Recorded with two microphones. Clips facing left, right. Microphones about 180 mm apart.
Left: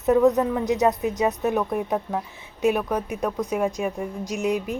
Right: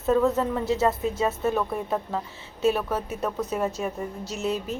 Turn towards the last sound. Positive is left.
turn(degrees=15)  # may be behind; listen again after turning